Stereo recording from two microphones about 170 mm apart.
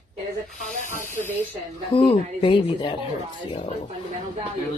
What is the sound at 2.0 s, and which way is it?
Speech, 30° left (ahead or behind).